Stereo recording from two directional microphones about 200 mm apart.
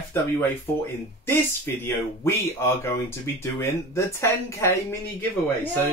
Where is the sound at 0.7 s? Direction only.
10° left (ahead or behind).